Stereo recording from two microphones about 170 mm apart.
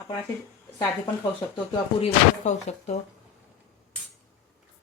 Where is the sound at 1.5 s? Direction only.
25° left (ahead or behind).